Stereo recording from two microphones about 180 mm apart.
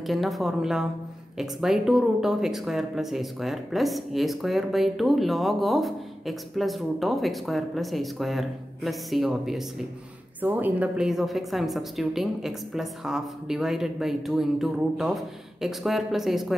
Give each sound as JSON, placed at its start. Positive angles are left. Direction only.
{"t": 0.0, "sound": "speech", "side_deg": 0}